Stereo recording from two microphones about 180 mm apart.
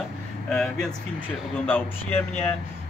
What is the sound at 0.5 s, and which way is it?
Speech, 5° left (ahead or behind).